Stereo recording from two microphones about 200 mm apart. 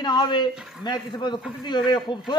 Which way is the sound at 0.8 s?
20° left (ahead or behind).